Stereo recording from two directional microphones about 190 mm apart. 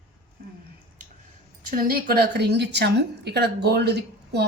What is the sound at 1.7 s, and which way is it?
A woman's voice, 50° right (ahead or behind).